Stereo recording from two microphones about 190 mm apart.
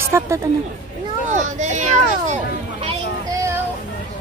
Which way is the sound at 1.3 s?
40° right (ahead or behind).